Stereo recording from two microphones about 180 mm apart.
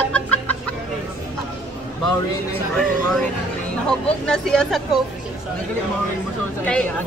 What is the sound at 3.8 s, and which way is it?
A woman's voice, 5° left (ahead or behind).